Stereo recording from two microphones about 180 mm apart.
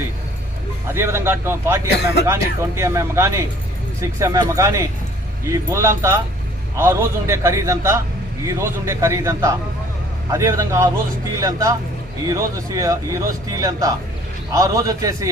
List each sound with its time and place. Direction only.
0.9 s speech: 15° right (ahead or behind)